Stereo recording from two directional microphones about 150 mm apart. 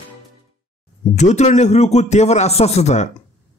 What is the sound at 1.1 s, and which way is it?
A man's voice, 50° left (ahead or behind).